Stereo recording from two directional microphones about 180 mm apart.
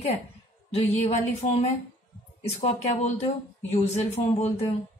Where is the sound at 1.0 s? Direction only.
40° left (ahead or behind).